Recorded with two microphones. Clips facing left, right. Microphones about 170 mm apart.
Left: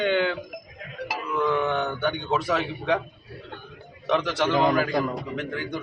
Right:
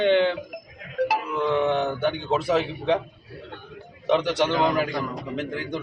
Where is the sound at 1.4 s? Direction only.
25° right (ahead or behind).